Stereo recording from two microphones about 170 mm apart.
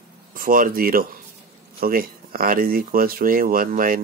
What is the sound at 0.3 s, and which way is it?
Speech, 55° right (ahead or behind).